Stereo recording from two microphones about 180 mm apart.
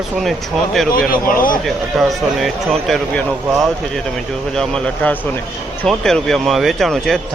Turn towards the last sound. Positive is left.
turn(degrees=0)  # may be behind; listen again after turning